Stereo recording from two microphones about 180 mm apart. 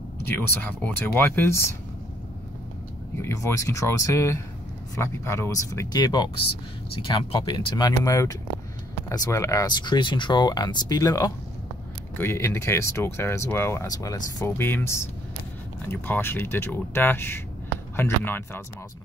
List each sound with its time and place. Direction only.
0.2 s speech: 10° left (ahead or behind)
3.2 s speech: 15° left (ahead or behind)